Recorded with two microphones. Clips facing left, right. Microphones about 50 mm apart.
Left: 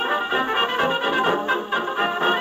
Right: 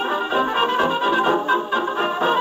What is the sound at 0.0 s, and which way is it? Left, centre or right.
Music, centre.